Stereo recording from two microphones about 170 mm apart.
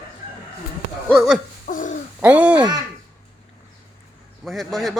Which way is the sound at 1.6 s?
50° left (ahead or behind).